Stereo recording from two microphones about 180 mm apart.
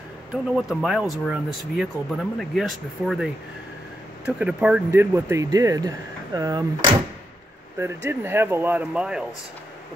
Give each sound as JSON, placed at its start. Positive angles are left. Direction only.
{"t": 0.3, "sound": "speech", "side_deg": 0}
{"t": 4.4, "sound": "speech", "side_deg": -5}
{"t": 5.1, "sound": "speech", "side_deg": -15}
{"t": 7.8, "sound": "speech", "side_deg": -10}